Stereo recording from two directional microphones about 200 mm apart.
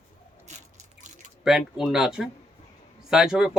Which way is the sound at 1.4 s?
Centre (ahead or behind).